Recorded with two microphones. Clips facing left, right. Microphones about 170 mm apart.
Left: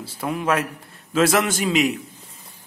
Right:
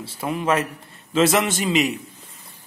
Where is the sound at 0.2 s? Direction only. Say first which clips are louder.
Right 1 dB; centre (ahead or behind).